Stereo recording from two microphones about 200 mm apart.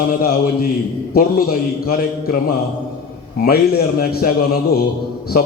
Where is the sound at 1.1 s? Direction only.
45° left (ahead or behind).